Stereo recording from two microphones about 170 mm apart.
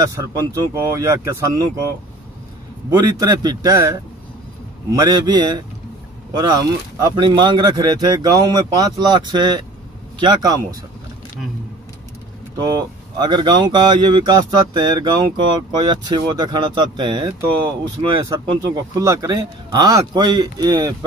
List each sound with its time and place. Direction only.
0.0 s speech: 20° right (ahead or behind)
2.9 s speech: 20° right (ahead or behind)
12.5 s speech: 25° right (ahead or behind)